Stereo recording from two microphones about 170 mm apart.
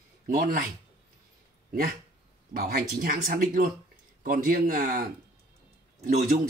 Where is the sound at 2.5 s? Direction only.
55° right (ahead or behind).